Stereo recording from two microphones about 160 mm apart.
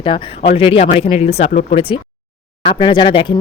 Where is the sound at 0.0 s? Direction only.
30° left (ahead or behind).